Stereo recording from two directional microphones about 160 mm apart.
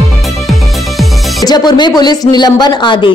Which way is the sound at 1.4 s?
25° left (ahead or behind).